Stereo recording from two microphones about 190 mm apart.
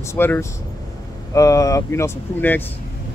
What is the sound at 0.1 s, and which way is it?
Speech, 10° left (ahead or behind).